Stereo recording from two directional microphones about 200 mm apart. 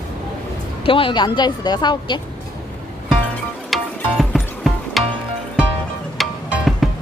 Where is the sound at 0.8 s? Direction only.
25° left (ahead or behind).